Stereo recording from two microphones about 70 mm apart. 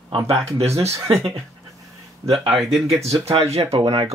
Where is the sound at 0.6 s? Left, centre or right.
Right.